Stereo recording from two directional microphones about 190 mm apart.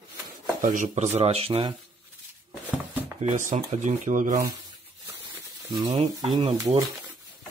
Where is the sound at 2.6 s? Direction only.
10° right (ahead or behind).